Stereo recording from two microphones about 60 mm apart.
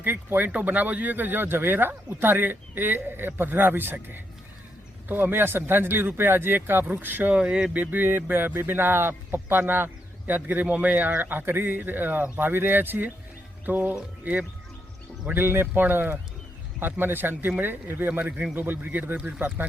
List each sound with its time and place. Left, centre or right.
0.0 s speech: right
7.3 s speech: centre; by 19.6 s right